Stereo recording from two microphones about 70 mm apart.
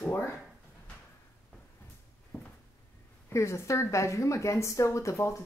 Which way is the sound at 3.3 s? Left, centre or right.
Left.